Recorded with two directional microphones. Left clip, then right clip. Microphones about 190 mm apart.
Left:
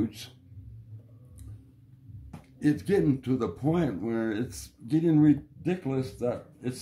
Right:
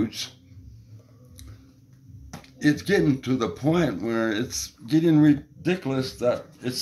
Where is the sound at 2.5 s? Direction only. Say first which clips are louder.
Right 4 dB; 5° left (ahead or behind).